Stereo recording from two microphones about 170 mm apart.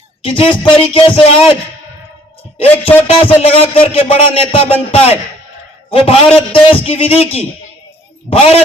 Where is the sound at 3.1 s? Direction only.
35° left (ahead or behind).